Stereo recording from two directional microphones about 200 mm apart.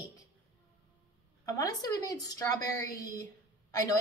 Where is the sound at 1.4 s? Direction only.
15° left (ahead or behind).